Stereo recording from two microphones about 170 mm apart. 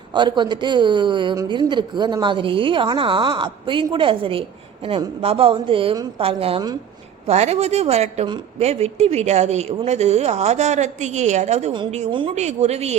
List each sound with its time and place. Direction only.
0.1 s speech: 25° right (ahead or behind)